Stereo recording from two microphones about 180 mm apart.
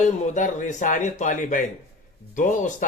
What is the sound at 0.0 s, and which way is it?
Speech, 45° left (ahead or behind).